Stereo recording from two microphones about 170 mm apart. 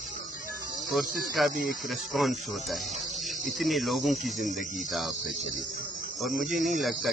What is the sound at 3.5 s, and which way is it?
Cricket, centre (ahead or behind).